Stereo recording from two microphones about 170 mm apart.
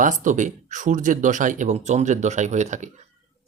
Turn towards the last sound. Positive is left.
turn(degrees=-45)  # may be behind; listen again after turning